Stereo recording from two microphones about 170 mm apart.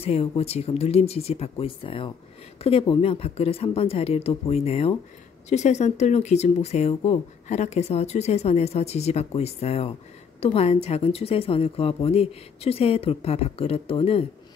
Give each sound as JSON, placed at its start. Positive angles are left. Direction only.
{"t": 0.0, "sound": "speech", "side_deg": 35}